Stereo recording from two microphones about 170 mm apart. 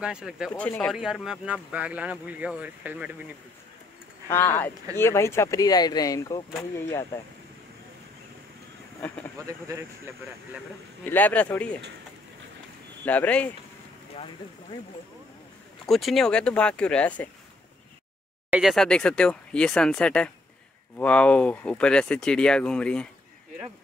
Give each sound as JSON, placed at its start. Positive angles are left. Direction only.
{"t": 0.0, "sound": "speech", "side_deg": -5}
{"t": 0.5, "sound": "speech", "side_deg": 10}
{"t": 0.7, "sound": "speech", "side_deg": 0}
{"t": 4.3, "sound": "speech", "side_deg": 15}
{"t": 11.1, "sound": "speech", "side_deg": 10}
{"t": 13.0, "sound": "speech", "side_deg": 10}
{"t": 14.1, "sound": "speech", "side_deg": 30}
{"t": 15.9, "sound": "speech", "side_deg": 0}
{"t": 18.5, "sound": "speech", "side_deg": 0}